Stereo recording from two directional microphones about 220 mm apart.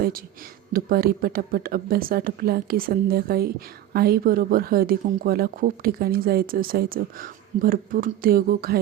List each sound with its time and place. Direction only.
0.7 s speech: 40° right (ahead or behind)